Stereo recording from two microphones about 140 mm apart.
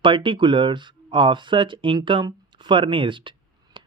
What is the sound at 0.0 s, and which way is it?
Speech, 35° right (ahead or behind).